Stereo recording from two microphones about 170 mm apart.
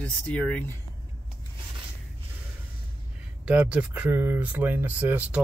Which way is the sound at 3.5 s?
5° right (ahead or behind).